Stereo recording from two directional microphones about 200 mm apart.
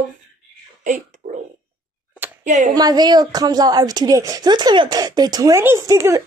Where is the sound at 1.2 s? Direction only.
35° right (ahead or behind).